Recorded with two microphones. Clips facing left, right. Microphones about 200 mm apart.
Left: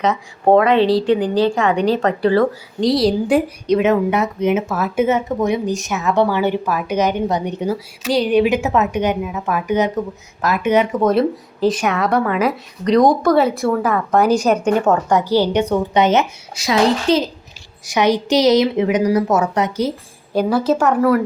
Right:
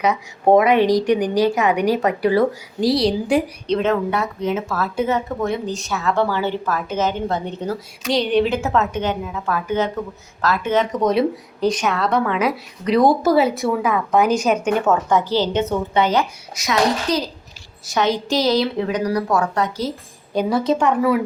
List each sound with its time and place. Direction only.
0.0 s a woman's voice: 15° right (ahead or behind)
2.9 s a woman's voice: 5° left (ahead or behind)
11.0 s a woman's voice: centre (ahead or behind)
15.2 s a woman's voice: 15° left (ahead or behind)
17.8 s a woman's voice: 15° left (ahead or behind)
20.3 s speech: centre (ahead or behind)